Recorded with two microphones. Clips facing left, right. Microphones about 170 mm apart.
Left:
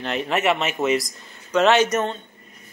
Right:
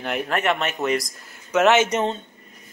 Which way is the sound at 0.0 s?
10° right (ahead or behind).